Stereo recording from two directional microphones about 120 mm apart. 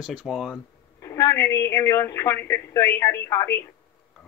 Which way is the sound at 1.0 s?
25° left (ahead or behind).